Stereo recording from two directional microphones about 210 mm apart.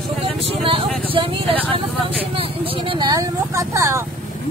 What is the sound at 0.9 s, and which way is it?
Speech, 5° left (ahead or behind).